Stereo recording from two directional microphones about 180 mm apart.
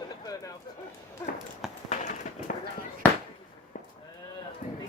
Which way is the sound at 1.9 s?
45° left (ahead or behind).